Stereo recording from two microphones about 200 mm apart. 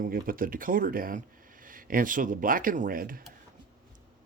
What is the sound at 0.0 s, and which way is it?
Speech, 45° right (ahead or behind).